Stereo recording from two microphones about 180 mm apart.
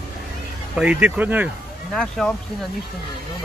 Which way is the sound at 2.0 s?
5° left (ahead or behind).